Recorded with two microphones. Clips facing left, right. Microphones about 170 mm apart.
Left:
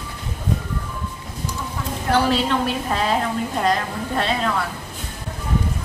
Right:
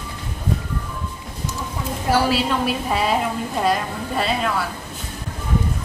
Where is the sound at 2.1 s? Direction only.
5° right (ahead or behind).